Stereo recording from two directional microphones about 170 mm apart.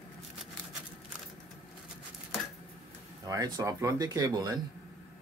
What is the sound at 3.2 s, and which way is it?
Speech, 20° right (ahead or behind).